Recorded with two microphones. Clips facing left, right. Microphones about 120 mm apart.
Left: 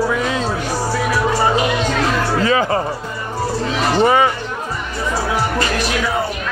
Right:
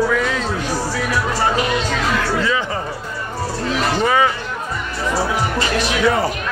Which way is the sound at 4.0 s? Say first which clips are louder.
Left 4 dB; 30° left (ahead or behind).